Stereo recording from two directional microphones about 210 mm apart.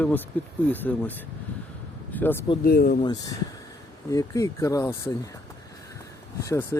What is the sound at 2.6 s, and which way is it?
Speech, 45° left (ahead or behind).